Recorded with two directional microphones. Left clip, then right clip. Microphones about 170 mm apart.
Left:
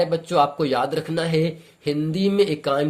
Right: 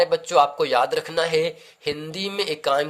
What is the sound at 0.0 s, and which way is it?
Speech, 30° right (ahead or behind).